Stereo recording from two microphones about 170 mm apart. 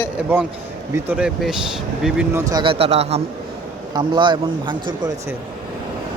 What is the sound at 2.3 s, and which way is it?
Speech, 20° right (ahead or behind).